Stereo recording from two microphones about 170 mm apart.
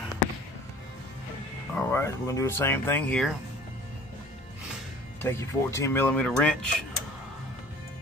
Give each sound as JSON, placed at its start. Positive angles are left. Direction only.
{"t": 1.8, "sound": "speech", "side_deg": 15}
{"t": 5.2, "sound": "speech", "side_deg": 15}